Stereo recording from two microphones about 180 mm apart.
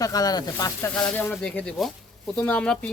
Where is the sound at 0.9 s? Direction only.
10° left (ahead or behind).